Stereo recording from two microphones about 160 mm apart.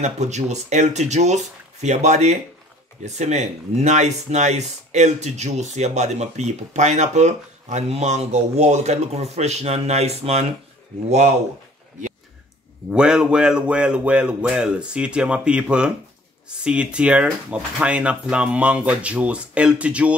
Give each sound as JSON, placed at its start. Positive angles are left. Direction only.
{"t": 0.0, "sound": "speech", "side_deg": -45}
{"t": 12.9, "sound": "speech", "side_deg": -5}